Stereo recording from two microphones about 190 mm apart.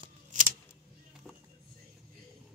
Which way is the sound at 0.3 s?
40° right (ahead or behind).